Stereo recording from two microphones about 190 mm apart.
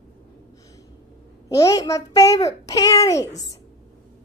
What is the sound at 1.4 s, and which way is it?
A child's voice, 15° left (ahead or behind).